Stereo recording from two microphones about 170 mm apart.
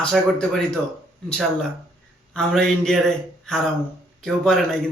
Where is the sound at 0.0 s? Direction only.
5° left (ahead or behind).